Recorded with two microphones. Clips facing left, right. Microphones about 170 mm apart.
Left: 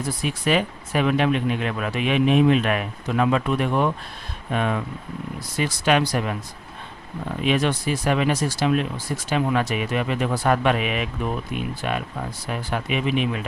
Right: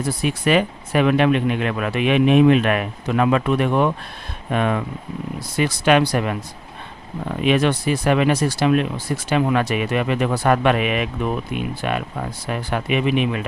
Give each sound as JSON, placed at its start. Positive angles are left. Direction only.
{"t": 0.2, "sound": "speech", "side_deg": -65}
{"t": 7.4, "sound": "speech", "side_deg": -65}